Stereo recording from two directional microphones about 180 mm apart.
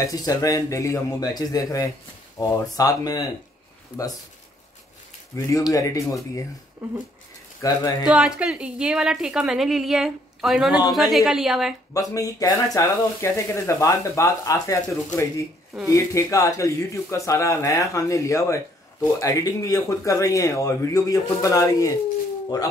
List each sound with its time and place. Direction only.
0.0 s speech: 20° left (ahead or behind)
5.3 s speech: 15° left (ahead or behind)
7.6 s speech: 20° left (ahead or behind)
8.1 s a woman's voice: 5° right (ahead or behind)
11.9 s speech: 20° left (ahead or behind)